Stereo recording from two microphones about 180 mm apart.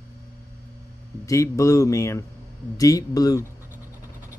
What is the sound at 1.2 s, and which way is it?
Speech, 15° left (ahead or behind).